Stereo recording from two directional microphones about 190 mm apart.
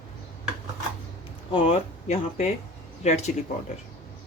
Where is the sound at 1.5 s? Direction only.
35° left (ahead or behind).